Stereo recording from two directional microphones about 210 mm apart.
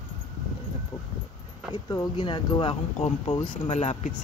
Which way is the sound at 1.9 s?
20° left (ahead or behind).